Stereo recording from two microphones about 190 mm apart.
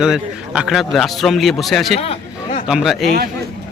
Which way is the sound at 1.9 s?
30° left (ahead or behind).